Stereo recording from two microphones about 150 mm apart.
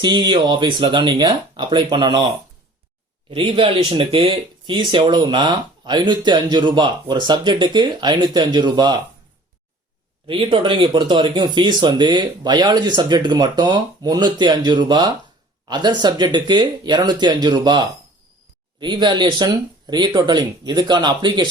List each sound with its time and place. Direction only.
0.0 s speech: 30° right (ahead or behind)
3.2 s speech: 35° right (ahead or behind)
10.2 s speech: 35° right (ahead or behind)